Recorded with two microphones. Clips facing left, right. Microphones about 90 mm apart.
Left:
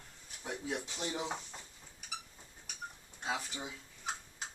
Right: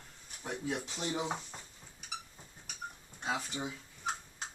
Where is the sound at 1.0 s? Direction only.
5° right (ahead or behind).